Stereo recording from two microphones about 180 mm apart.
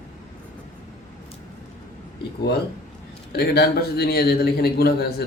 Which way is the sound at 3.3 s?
60° left (ahead or behind).